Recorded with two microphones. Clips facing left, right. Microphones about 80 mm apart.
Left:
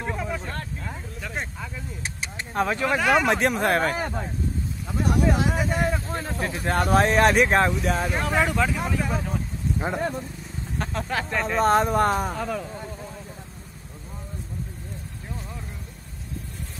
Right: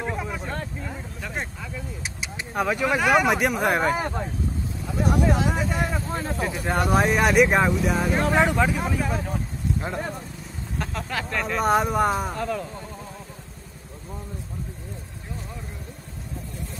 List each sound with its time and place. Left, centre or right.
0.0 s vehicle: centre
2.0 s speech: centre
8.4 s speech: centre
8.8 s speech: centre
9.8 s speech: left
10.8 s speech: centre